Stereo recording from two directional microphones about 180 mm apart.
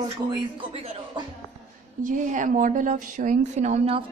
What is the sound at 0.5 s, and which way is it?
Speech, 35° right (ahead or behind).